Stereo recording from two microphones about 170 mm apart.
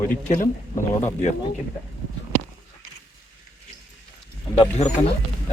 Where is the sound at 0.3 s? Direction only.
45° left (ahead or behind).